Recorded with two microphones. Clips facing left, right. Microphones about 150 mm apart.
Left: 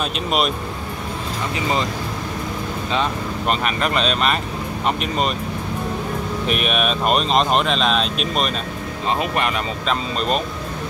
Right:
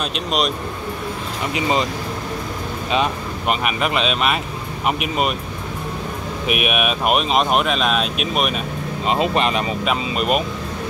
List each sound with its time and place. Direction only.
1.5 s speech: 20° right (ahead or behind)
2.9 s speech: 15° right (ahead or behind)
6.4 s speech: 10° right (ahead or behind)
9.0 s speech: 20° right (ahead or behind)
9.8 s speech: 10° right (ahead or behind)